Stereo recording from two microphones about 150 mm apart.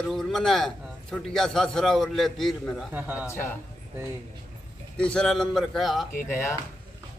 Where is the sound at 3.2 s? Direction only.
15° left (ahead or behind).